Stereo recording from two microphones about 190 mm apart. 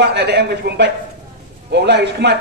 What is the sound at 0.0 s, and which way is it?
A man's voice, 60° right (ahead or behind).